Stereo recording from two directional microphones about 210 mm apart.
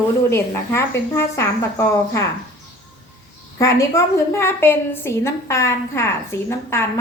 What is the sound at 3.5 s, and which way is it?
A woman's voice, 15° left (ahead or behind).